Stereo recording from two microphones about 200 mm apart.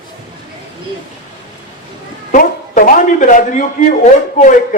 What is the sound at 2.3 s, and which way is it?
Speech, 40° left (ahead or behind).